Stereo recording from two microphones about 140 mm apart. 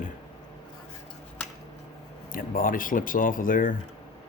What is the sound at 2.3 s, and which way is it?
Speech, 80° left.